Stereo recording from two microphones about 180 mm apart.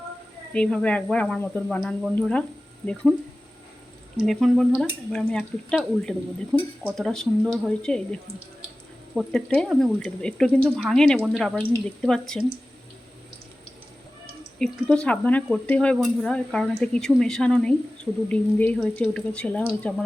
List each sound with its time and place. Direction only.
0.5 s speech: 5° left (ahead or behind)
4.3 s speech: centre (ahead or behind)
14.6 s speech: 5° left (ahead or behind)